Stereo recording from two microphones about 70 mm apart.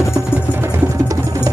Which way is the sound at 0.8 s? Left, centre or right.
Right.